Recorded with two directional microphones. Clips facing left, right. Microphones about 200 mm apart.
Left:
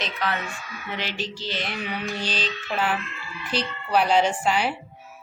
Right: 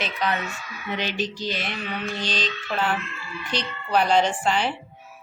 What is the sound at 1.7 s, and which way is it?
A woman's voice, 10° left (ahead or behind).